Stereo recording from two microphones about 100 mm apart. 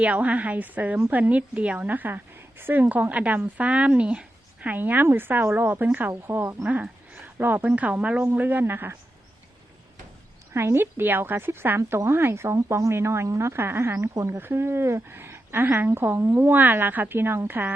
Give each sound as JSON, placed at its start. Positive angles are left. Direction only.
{"t": 0.0, "sound": "a woman's voice", "side_deg": -15}
{"t": 10.5, "sound": "a woman's voice", "side_deg": -25}